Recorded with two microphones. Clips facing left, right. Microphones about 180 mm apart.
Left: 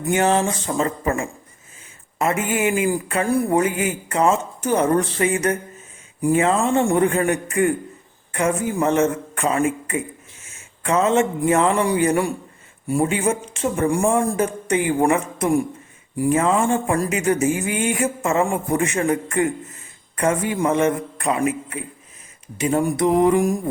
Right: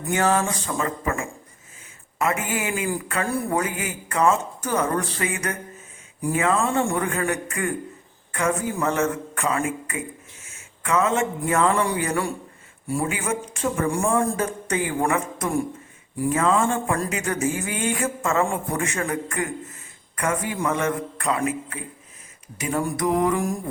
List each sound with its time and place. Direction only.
0.1 s a man's voice: 20° left (ahead or behind)